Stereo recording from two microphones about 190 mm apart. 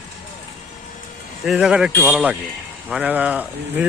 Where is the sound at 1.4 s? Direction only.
5° right (ahead or behind).